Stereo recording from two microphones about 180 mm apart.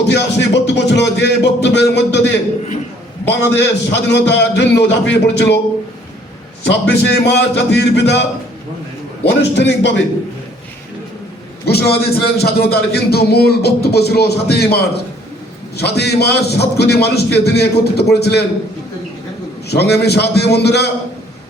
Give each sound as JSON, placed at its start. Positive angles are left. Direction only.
{"t": 0.1, "sound": "music", "side_deg": 70}
{"t": 3.2, "sound": "a man's voice", "side_deg": 75}
{"t": 6.7, "sound": "a man's voice", "side_deg": 60}
{"t": 9.4, "sound": "a man's voice", "side_deg": 70}
{"t": 11.6, "sound": "a man's voice", "side_deg": 60}
{"t": 19.6, "sound": "a man's voice", "side_deg": 65}